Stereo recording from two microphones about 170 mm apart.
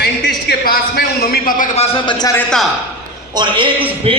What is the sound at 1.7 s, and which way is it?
Speech, 30° left (ahead or behind).